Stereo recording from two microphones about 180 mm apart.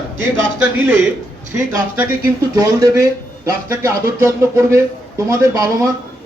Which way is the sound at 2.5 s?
20° right (ahead or behind).